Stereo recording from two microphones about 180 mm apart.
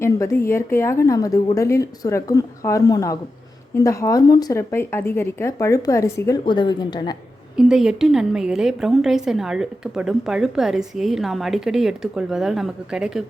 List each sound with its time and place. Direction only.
0.0 s a woman's voice: 15° left (ahead or behind)
7.5 s a woman's voice: 5° right (ahead or behind)